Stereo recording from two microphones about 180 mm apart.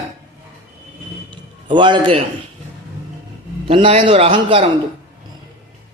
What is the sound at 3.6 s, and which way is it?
A man's voice, 30° right (ahead or behind).